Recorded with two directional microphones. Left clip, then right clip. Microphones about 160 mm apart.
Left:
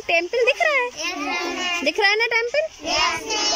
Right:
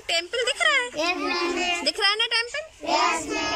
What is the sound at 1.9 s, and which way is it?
Speech, 25° left (ahead or behind).